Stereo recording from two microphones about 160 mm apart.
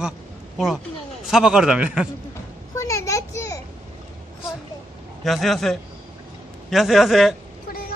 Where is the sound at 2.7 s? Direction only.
20° left (ahead or behind).